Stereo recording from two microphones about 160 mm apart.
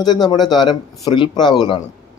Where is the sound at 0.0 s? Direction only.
25° left (ahead or behind).